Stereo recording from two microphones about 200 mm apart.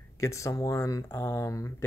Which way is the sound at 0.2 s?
15° left (ahead or behind).